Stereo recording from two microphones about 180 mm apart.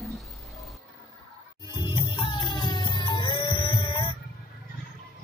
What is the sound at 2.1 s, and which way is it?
Music, 25° left (ahead or behind).